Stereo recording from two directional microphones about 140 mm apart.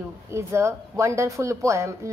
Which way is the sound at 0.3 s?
20° right (ahead or behind).